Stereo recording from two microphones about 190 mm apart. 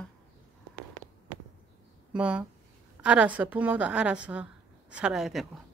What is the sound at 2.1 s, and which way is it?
A woman's voice, 5° right (ahead or behind).